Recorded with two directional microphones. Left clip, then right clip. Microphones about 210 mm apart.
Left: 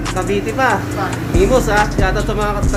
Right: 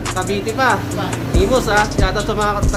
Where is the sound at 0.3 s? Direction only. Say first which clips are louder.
Left 1 dB; centre (ahead or behind).